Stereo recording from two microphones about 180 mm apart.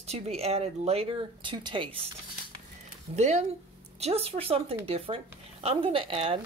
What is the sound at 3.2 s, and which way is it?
Speech, 40° right (ahead or behind).